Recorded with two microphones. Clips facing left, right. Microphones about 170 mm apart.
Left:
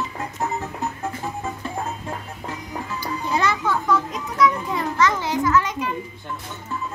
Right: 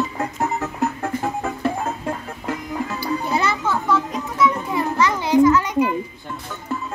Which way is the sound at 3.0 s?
5° right (ahead or behind).